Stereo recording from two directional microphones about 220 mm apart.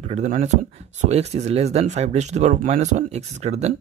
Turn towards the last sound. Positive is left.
turn(degrees=-30)  # may be behind; listen again after turning